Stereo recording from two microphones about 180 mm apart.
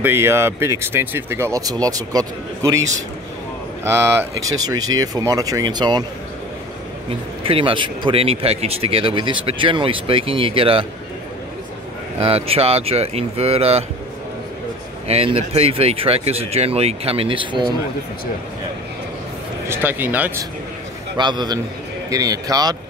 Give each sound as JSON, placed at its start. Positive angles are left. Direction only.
{"t": 0.0, "sound": "speech", "side_deg": -15}
{"t": 3.8, "sound": "speech", "side_deg": -15}
{"t": 7.4, "sound": "speech", "side_deg": -30}
{"t": 12.2, "sound": "speech", "side_deg": -35}
{"t": 15.0, "sound": "speech", "side_deg": -35}
{"t": 19.7, "sound": "speech", "side_deg": -10}
{"t": 21.2, "sound": "speech", "side_deg": -25}